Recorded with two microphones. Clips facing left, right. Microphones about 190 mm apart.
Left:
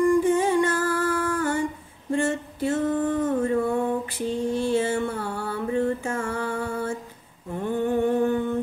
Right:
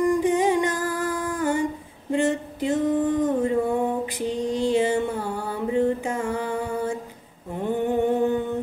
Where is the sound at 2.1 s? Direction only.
15° right (ahead or behind).